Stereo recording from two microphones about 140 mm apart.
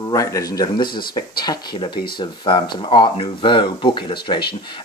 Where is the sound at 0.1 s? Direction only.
25° left (ahead or behind).